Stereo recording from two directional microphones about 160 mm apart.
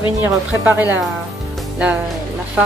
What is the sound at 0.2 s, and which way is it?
Speech, 10° right (ahead or behind).